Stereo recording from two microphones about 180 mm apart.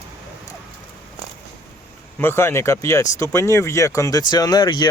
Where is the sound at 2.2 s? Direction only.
15° left (ahead or behind).